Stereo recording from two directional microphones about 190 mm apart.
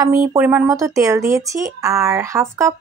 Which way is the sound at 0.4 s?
10° right (ahead or behind).